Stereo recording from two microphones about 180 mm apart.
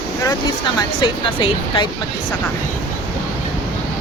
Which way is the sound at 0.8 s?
25° left (ahead or behind).